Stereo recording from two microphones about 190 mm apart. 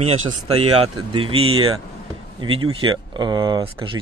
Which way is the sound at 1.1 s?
30° right (ahead or behind).